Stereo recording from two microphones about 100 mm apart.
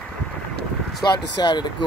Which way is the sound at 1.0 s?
45° left (ahead or behind).